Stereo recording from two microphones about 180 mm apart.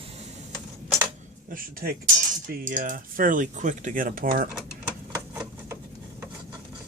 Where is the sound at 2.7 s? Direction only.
50° right (ahead or behind).